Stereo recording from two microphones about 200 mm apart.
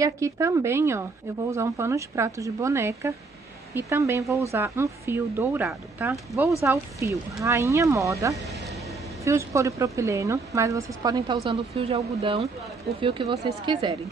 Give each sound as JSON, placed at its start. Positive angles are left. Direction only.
{"t": 0.0, "sound": "speech", "side_deg": -15}
{"t": 11.4, "sound": "speech", "side_deg": -30}